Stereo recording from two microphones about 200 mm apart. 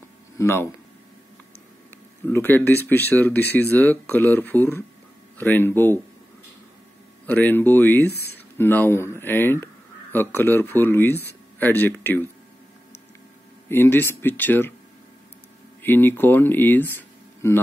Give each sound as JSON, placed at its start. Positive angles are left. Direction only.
{"t": 0.4, "sound": "speech", "side_deg": 10}
{"t": 2.2, "sound": "speech", "side_deg": 10}
{"t": 7.2, "sound": "speech", "side_deg": 10}
{"t": 8.1, "sound": "speech", "side_deg": 55}
{"t": 8.5, "sound": "speech", "side_deg": 10}
{"t": 13.7, "sound": "speech", "side_deg": 10}
{"t": 15.8, "sound": "speech", "side_deg": 10}